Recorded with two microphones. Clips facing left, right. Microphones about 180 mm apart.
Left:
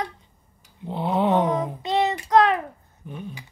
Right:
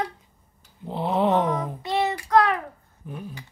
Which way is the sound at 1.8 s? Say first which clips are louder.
Left 2 dB; 20° left (ahead or behind).